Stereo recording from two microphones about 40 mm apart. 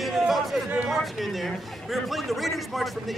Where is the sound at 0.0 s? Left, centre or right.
Centre.